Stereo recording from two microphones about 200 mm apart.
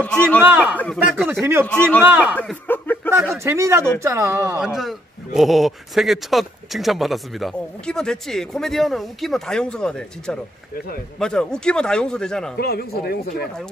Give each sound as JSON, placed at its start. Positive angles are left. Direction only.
{"t": 0.4, "sound": "speech", "side_deg": -10}
{"t": 2.3, "sound": "chuckle", "side_deg": 10}
{"t": 3.1, "sound": "speech", "side_deg": -15}
{"t": 4.6, "sound": "speech", "side_deg": 0}
{"t": 12.5, "sound": "speech", "side_deg": 50}